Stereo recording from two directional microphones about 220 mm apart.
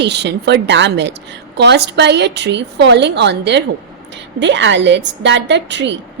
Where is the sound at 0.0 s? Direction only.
50° right (ahead or behind).